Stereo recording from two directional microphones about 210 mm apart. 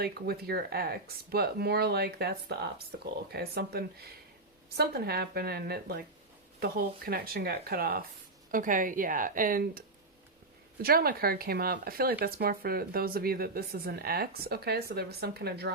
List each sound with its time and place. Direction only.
0.0 s speech: 45° right (ahead or behind)
10.8 s speech: 45° right (ahead or behind)